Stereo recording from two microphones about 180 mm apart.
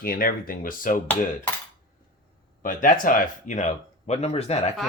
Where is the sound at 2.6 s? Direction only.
50° left (ahead or behind).